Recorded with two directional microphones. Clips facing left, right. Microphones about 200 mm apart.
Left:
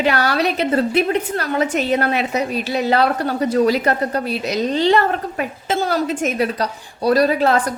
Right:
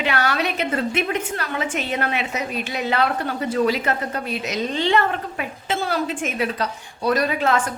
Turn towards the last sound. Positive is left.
turn(degrees=35)  # may be behind; listen again after turning